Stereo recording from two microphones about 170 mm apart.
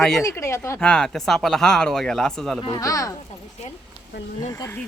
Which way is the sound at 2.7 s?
20° left (ahead or behind).